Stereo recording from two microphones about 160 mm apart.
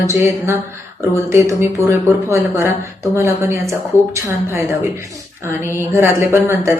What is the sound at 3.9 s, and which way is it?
Speech, 15° left (ahead or behind).